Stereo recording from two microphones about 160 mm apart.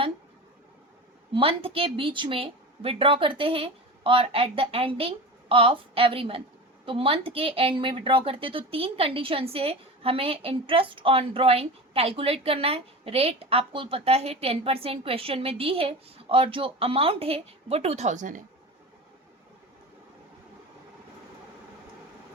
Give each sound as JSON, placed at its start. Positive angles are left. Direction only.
{"t": 1.3, "sound": "a woman's voice", "side_deg": -35}